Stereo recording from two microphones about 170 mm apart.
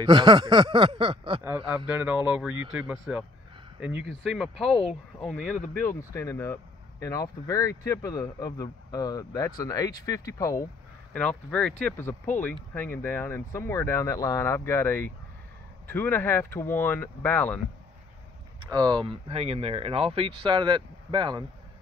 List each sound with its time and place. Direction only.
0.0 s speech: 25° right (ahead or behind)
1.9 s speech: 10° right (ahead or behind)
5.8 s speech: 15° left (ahead or behind)
11.1 s speech: 5° left (ahead or behind)
18.6 s speech: 25° right (ahead or behind)